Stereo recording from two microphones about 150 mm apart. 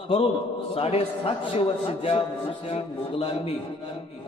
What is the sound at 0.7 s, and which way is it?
A man's voice, 40° left (ahead or behind).